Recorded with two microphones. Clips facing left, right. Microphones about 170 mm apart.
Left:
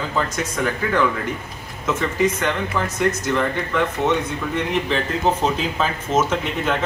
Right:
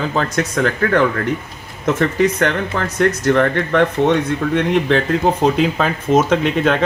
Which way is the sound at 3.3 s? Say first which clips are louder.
Right 7 dB; 70° right (ahead or behind).